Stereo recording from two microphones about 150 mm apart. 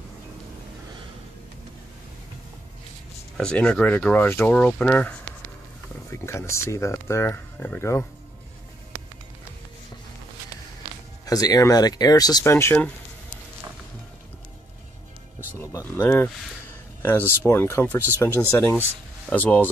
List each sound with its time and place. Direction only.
3.3 s speech: 5° left (ahead or behind)
11.2 s speech: 25° left (ahead or behind)
15.5 s a sound: 15° left (ahead or behind)
17.0 s speech: 15° left (ahead or behind)